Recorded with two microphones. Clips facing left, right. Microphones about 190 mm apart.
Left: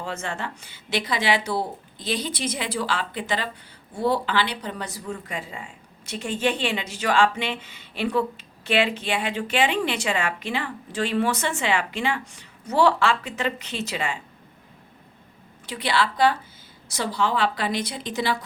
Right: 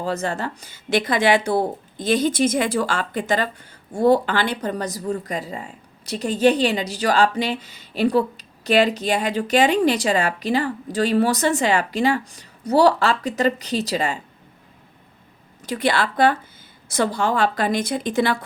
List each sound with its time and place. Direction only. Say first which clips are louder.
0.0 s speech: right 6 dB; 40° right (ahead or behind)
15.6 s speech: right 3 dB; 45° right (ahead or behind)